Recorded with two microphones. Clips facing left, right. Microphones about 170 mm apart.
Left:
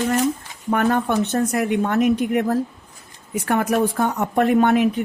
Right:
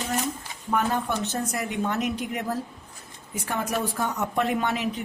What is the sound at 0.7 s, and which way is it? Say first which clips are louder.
Speech: left 6 dB; 60° left (ahead or behind).